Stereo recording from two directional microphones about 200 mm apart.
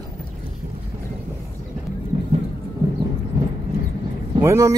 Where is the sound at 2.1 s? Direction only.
25° right (ahead or behind).